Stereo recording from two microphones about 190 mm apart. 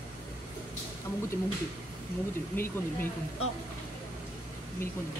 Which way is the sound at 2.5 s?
10° left (ahead or behind).